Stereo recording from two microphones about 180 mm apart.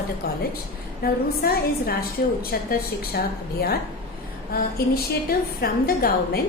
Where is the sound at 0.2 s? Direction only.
60° left (ahead or behind).